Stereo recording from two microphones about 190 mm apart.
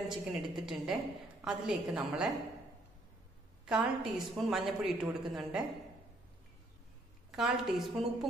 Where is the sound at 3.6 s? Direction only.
Centre (ahead or behind).